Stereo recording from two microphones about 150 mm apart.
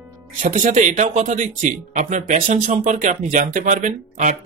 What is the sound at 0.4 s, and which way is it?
Speech, 55° right (ahead or behind).